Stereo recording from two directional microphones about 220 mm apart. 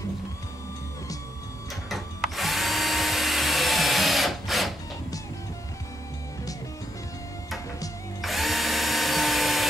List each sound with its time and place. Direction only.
1.9 s drill: centre (ahead or behind)
8.2 s drill: centre (ahead or behind)